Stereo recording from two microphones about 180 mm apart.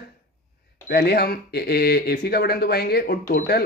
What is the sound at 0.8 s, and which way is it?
Speech, 65° left (ahead or behind).